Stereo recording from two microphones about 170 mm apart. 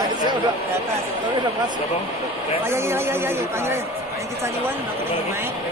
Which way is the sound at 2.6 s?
15° right (ahead or behind).